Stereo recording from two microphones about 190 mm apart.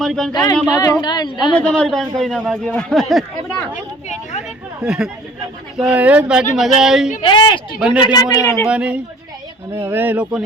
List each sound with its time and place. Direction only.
0.0 s speech: centre (ahead or behind)
0.7 s a woman's voice: 20° left (ahead or behind)
1.5 s speech: 5° left (ahead or behind)
4.8 s speech: 5° right (ahead or behind)
7.2 s a woman's voice: 25° left (ahead or behind)
8.6 s speech: 5° right (ahead or behind)